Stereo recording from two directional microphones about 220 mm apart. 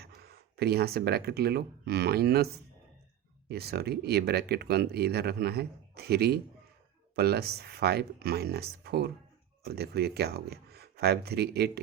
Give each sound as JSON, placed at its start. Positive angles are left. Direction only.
{"t": 0.0, "sound": "speech", "side_deg": -45}
{"t": 3.5, "sound": "speech", "side_deg": -45}